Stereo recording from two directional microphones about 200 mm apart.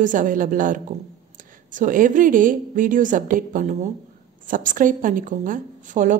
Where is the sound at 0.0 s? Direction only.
40° right (ahead or behind).